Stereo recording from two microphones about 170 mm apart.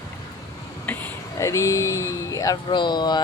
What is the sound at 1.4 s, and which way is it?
Speech, 15° left (ahead or behind).